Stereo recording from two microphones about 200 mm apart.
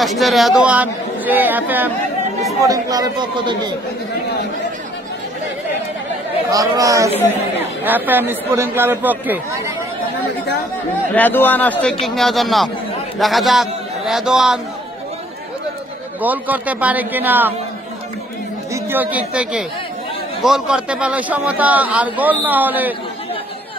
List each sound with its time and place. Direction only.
0.0 s a man's voice: centre (ahead or behind); by 3.7 s 20° right (ahead or behind)
6.5 s a man's voice: 15° right (ahead or behind)
11.1 s a man's voice: 10° left (ahead or behind)
16.2 s a man's voice: 10° right (ahead or behind)
18.7 s a man's voice: 10° right (ahead or behind)